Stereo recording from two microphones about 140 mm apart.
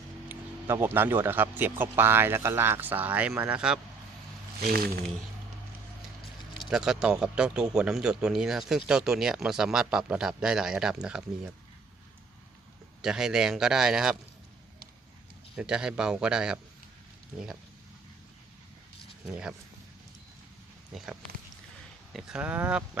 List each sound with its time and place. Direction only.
0.3 s a man's voice: 15° right (ahead or behind)
4.6 s speech: 90° right
6.7 s speech: 5° right (ahead or behind)
13.0 s speech: 5° right (ahead or behind)
15.5 s a man's voice: 5° right (ahead or behind)
19.2 s a man's voice: 5° right (ahead or behind)
20.9 s a man's voice: centre (ahead or behind)